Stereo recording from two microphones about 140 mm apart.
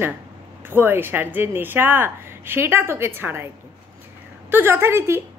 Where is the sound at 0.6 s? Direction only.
15° right (ahead or behind).